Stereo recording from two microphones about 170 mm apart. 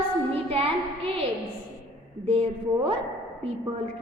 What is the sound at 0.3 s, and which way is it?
Music, 35° right (ahead or behind).